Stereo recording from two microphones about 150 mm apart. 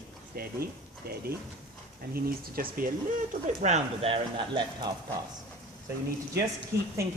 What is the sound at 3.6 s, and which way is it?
Speech, 45° right (ahead or behind).